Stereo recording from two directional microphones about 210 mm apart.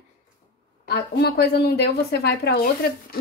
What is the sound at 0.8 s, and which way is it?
A woman's voice, 50° left (ahead or behind).